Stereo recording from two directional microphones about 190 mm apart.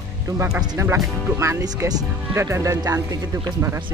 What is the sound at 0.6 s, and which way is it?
Speech, 15° right (ahead or behind).